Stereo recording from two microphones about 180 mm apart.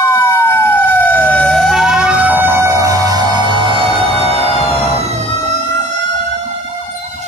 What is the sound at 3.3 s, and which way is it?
Music, 25° left (ahead or behind).